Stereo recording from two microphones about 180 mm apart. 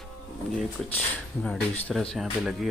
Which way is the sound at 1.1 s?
5° left (ahead or behind).